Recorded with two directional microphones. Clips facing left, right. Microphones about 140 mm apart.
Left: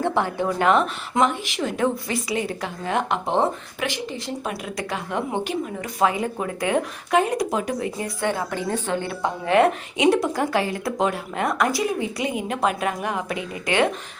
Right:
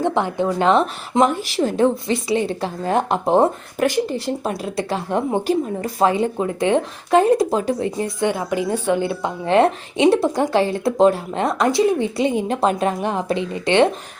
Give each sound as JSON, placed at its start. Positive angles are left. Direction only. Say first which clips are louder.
{"t": 0.0, "sound": "a woman's voice", "louder": "right 3 dB", "side_deg": -20}
{"t": 1.2, "sound": "a woman's voice", "louder": "right 5 dB", "side_deg": -40}
{"t": 4.4, "sound": "a woman's voice", "louder": "right 5 dB", "side_deg": -30}
{"t": 8.2, "sound": "a woman's voice", "louder": "right 4 dB", "side_deg": -15}